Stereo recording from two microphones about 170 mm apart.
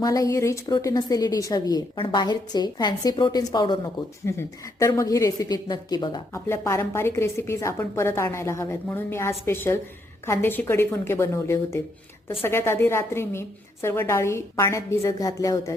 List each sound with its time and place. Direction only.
0.0 s a woman's voice: 20° left (ahead or behind)
4.3 s a woman's voice: 15° left (ahead or behind)
6.5 s a woman's voice: 15° left (ahead or behind)